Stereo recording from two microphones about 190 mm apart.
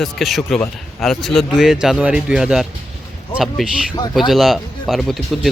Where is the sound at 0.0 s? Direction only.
Centre (ahead or behind).